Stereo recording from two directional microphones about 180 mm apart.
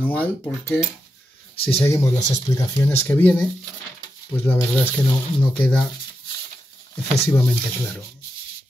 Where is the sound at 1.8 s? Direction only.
15° left (ahead or behind).